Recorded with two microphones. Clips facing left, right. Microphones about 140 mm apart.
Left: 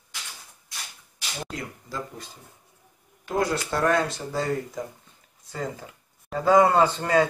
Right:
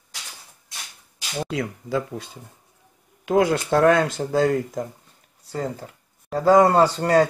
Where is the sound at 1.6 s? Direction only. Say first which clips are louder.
Right 9 dB; 75° right (ahead or behind).